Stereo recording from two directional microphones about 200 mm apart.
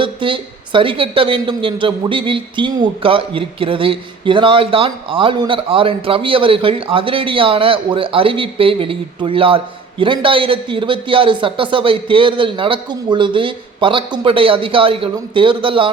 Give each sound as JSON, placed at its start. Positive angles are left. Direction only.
{"t": 0.0, "sound": "speech", "side_deg": -25}